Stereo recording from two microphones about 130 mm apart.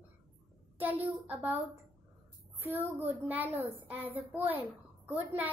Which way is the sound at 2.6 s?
15° right (ahead or behind).